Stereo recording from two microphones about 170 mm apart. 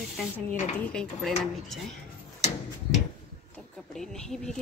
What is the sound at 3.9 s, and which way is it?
Speech, centre (ahead or behind).